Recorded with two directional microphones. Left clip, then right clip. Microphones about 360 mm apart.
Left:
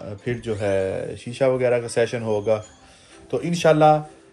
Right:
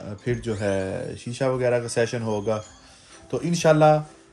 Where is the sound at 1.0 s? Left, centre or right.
Centre.